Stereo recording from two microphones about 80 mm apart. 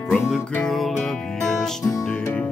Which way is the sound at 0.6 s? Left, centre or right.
Centre.